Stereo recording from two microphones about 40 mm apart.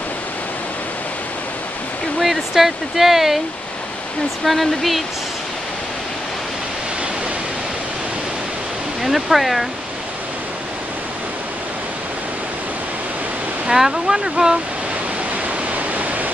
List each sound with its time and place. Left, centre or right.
2.1 s speech: centre
4.5 s speech: centre
9.0 s speech: centre
13.7 s speech: centre